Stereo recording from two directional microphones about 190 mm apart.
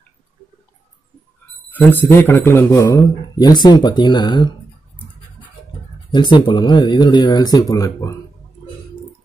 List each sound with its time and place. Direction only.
1.7 s a man's voice: 10° left (ahead or behind)
6.1 s speech: 25° left (ahead or behind)